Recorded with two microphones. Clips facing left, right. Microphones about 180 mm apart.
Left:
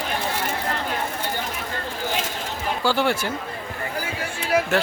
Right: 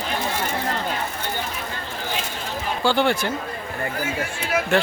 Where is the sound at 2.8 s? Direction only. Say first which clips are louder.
Right 2 dB; 5° left (ahead or behind).